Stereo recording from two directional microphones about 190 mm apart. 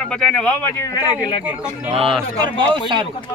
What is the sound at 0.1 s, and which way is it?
Speech, 5° left (ahead or behind).